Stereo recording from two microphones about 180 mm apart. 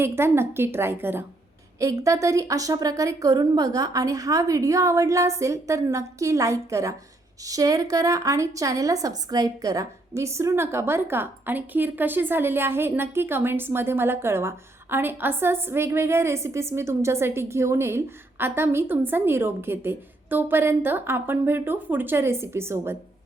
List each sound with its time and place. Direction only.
0.0 s a woman's voice: 15° right (ahead or behind)